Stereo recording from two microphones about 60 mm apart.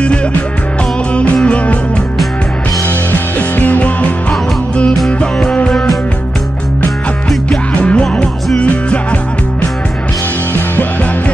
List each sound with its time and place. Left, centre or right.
0.0 s music: centre
3.1 s music: left
7.4 s music: centre